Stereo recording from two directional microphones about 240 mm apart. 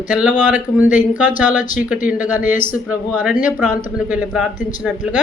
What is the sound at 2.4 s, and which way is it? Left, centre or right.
Speech, left.